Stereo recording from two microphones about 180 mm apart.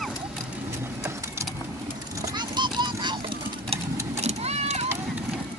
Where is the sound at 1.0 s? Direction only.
15° right (ahead or behind); by 4.8 s 35° right (ahead or behind).